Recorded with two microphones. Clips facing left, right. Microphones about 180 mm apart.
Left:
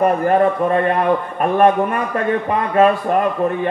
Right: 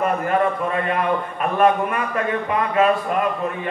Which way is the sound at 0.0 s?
40° left (ahead or behind).